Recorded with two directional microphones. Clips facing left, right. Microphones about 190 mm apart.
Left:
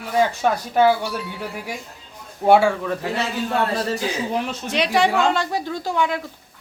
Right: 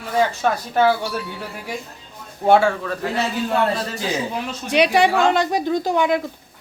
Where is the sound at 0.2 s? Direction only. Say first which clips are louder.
Even; 15° left (ahead or behind).